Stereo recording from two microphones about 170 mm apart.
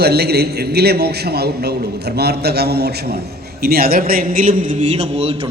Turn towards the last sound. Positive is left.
turn(degrees=-35)  # may be behind; listen again after turning